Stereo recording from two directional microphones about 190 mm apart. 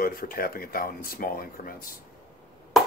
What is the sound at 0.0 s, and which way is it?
Speech, 50° left (ahead or behind).